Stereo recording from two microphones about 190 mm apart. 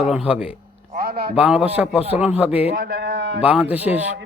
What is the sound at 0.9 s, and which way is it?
Speech, 55° right (ahead or behind).